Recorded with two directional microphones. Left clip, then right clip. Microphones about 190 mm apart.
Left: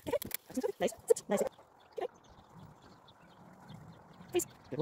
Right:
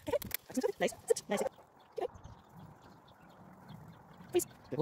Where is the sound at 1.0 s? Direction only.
30° left (ahead or behind).